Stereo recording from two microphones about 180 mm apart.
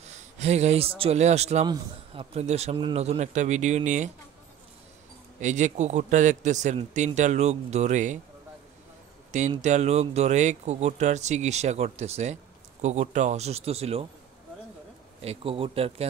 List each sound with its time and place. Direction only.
0.0 s speech: 40° right (ahead or behind)
5.4 s speech: 40° right (ahead or behind)
9.6 s speech: 40° right (ahead or behind)
15.2 s speech: 30° right (ahead or behind)